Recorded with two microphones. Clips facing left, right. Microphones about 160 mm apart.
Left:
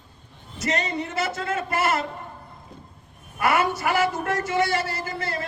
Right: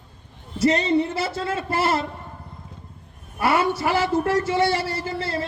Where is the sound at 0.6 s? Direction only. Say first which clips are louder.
Right 8 dB; 30° right (ahead or behind).